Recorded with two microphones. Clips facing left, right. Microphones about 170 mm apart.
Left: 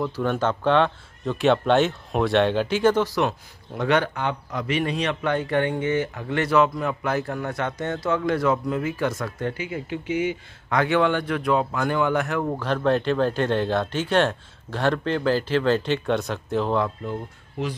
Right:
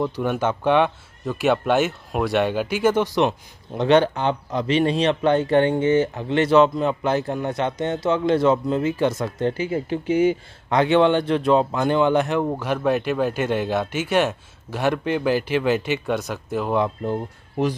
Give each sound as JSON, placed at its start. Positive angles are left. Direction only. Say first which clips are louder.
{"t": 0.0, "sound": "speech", "louder": "right 1 dB", "side_deg": -15}
{"t": 3.0, "sound": "speech", "louder": "right 3 dB", "side_deg": -20}
{"t": 10.7, "sound": "speech", "louder": "right 4 dB", "side_deg": -25}
{"t": 12.5, "sound": "speech", "louder": "even", "side_deg": -10}